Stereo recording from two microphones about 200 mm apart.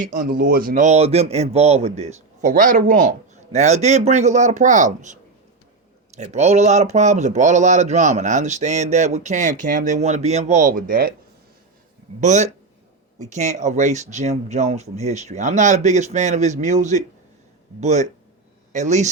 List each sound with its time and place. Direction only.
0.1 s speech: 45° right (ahead or behind)
6.1 s speech: 35° right (ahead or behind)
12.2 s speech: 35° right (ahead or behind)